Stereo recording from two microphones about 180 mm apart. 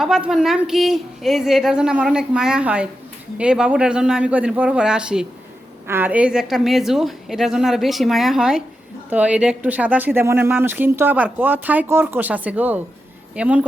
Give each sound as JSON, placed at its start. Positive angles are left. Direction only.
{"t": 0.0, "sound": "a woman's voice", "side_deg": -5}